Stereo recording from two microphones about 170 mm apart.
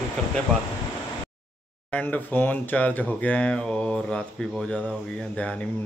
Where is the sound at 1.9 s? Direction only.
10° left (ahead or behind).